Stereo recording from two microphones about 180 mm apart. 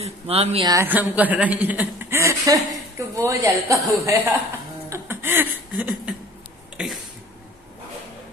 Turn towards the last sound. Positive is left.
turn(degrees=0)  # may be behind; listen again after turning